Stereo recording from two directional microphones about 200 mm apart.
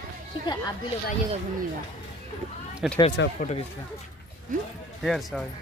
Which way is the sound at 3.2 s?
60° left (ahead or behind).